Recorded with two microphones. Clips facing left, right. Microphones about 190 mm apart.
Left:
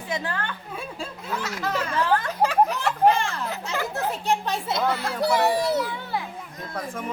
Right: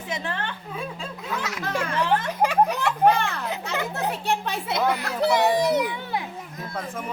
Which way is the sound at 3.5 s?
20° right (ahead or behind).